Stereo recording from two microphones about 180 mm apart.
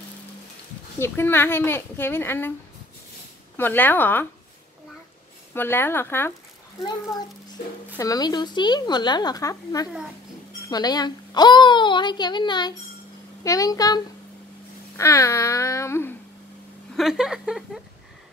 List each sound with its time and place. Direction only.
0.9 s speech: 15° left (ahead or behind)
3.5 s speech: 10° left (ahead or behind)
5.5 s speech: 10° left (ahead or behind)
8.0 s a woman's voice: 20° left (ahead or behind)
16.9 s speech: centre (ahead or behind)